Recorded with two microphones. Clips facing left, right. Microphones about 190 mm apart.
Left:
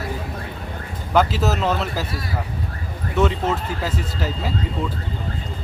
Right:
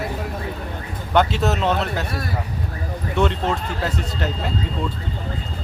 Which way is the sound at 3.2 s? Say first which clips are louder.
Left 1 dB; 5° left (ahead or behind).